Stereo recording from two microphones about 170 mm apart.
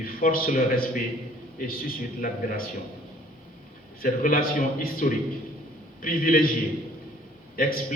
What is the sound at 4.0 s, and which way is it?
A man's voice, 55° left (ahead or behind).